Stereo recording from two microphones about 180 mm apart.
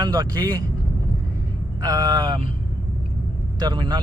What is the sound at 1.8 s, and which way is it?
Speech, 20° right (ahead or behind).